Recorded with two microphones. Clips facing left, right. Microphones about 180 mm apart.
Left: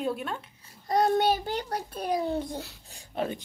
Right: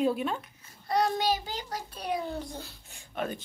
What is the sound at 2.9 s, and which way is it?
Speech, 35° left (ahead or behind).